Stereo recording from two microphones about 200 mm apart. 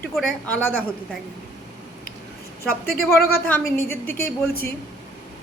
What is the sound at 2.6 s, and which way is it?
Speech, 50° left (ahead or behind).